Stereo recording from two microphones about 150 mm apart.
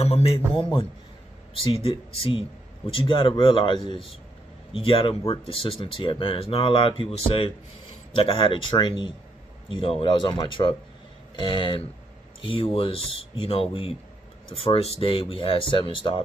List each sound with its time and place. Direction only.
0.0 s a man's voice: 40° left (ahead or behind)